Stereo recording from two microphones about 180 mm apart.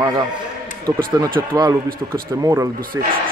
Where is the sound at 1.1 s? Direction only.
20° right (ahead or behind).